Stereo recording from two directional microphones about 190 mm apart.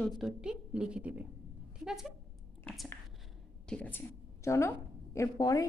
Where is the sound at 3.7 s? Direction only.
10° left (ahead or behind).